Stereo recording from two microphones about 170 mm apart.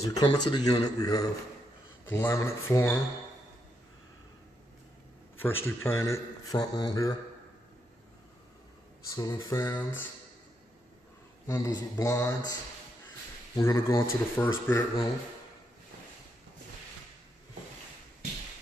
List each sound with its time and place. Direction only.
0.0 s a man's voice: 20° left (ahead or behind)
5.4 s a man's voice: 15° left (ahead or behind)
9.1 s speech: 20° left (ahead or behind)
11.4 s a man's voice: 20° left (ahead or behind)
13.6 s speech: 15° left (ahead or behind)